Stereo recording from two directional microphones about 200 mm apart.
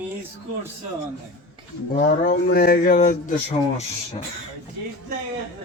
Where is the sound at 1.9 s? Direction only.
45° left (ahead or behind).